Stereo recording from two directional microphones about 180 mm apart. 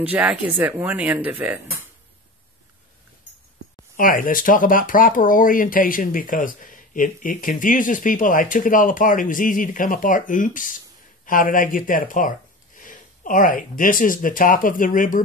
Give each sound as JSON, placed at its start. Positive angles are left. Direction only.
{"t": 0.0, "sound": "speech", "side_deg": -10}
{"t": 3.9, "sound": "speech", "side_deg": 50}